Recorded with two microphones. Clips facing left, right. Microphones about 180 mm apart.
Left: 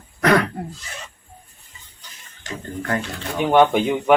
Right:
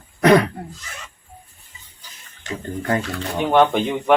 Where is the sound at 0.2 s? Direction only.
20° right (ahead or behind).